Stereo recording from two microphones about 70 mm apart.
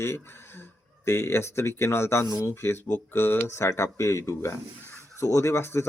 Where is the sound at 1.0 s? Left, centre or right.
Left.